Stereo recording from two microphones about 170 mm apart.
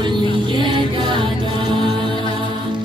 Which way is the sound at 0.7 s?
30° right (ahead or behind).